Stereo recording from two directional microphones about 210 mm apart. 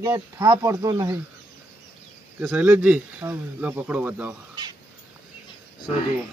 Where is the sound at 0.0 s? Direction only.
15° right (ahead or behind).